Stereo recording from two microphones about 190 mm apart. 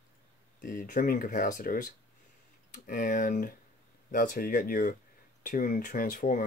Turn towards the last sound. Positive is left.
turn(degrees=45)  # may be behind; listen again after turning